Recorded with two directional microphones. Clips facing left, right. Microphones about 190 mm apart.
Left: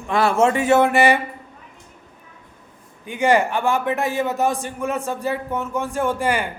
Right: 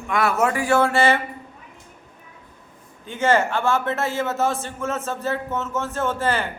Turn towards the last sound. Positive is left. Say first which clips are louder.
# left 2 dB
turn(degrees=15)  # may be behind; listen again after turning